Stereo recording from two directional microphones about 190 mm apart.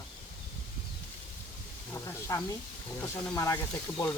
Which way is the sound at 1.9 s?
15° left (ahead or behind).